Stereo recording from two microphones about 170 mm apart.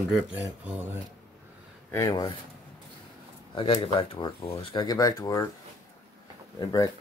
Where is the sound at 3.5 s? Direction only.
30° left (ahead or behind).